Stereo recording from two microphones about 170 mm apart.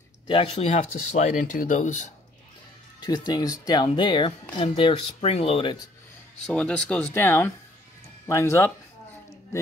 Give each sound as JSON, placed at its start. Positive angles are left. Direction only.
{"t": 0.3, "sound": "speech", "side_deg": 35}
{"t": 3.0, "sound": "speech", "side_deg": 25}
{"t": 6.4, "sound": "speech", "side_deg": 5}